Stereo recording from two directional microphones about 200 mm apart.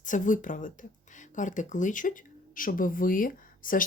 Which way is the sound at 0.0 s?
40° left (ahead or behind).